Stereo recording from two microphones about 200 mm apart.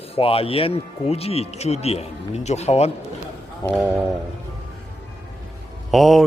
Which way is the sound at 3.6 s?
15° left (ahead or behind).